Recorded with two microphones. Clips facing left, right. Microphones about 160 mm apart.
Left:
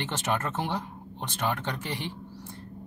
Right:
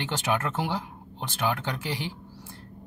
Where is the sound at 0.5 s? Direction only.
10° right (ahead or behind).